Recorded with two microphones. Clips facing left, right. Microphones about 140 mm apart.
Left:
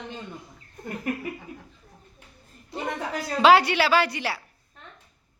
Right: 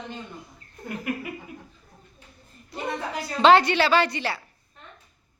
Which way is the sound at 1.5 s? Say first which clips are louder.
Even; 35° left (ahead or behind).